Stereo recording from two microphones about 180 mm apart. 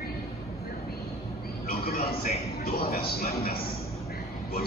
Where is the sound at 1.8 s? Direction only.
55° left (ahead or behind).